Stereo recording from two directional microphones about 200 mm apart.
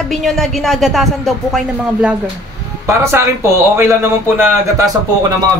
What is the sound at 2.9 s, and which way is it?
Speech, 15° right (ahead or behind).